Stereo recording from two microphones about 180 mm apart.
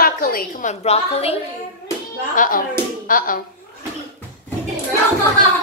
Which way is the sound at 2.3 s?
50° left (ahead or behind).